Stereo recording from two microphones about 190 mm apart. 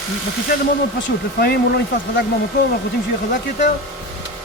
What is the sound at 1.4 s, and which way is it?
Speech, 55° left (ahead or behind).